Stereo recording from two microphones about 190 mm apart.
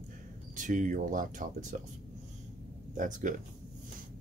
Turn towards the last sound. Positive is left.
turn(degrees=-40)  # may be behind; listen again after turning